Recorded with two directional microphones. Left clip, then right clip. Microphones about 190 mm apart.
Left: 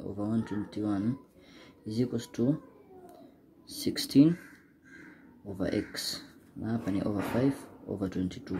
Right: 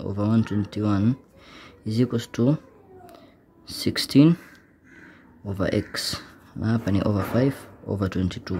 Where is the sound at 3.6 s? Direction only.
35° right (ahead or behind).